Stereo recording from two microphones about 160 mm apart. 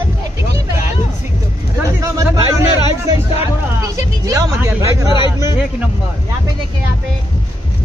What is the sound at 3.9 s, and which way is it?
Speech, 20° right (ahead or behind).